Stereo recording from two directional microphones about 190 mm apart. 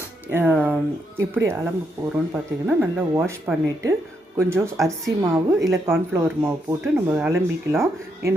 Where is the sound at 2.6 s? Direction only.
10° right (ahead or behind).